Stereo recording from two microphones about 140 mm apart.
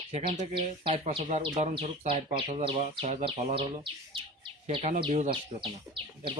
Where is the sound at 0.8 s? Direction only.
45° right (ahead or behind).